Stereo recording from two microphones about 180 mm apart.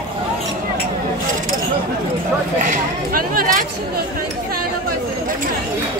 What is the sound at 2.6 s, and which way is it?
Speech, 45° right (ahead or behind).